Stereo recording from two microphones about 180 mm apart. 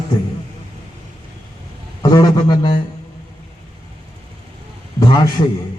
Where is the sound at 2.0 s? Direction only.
20° left (ahead or behind).